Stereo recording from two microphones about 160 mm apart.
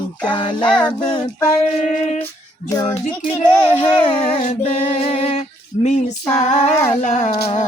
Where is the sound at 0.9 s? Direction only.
25° left (ahead or behind).